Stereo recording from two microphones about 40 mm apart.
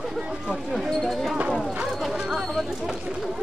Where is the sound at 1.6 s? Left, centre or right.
Centre.